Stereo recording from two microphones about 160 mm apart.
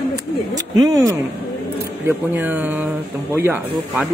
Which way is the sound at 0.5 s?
20° right (ahead or behind).